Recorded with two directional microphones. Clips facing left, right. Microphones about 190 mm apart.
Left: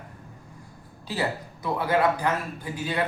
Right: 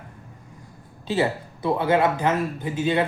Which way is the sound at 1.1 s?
25° right (ahead or behind).